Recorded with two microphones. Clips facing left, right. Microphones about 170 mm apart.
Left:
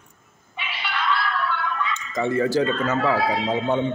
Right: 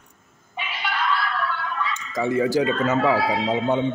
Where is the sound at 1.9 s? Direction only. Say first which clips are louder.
Right 1 dB; 10° right (ahead or behind).